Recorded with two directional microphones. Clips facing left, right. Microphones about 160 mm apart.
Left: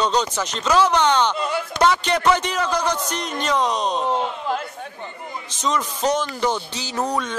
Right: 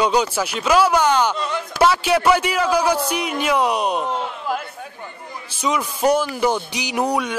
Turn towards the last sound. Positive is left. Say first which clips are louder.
# right 3 dB
turn(degrees=-10)  # may be behind; listen again after turning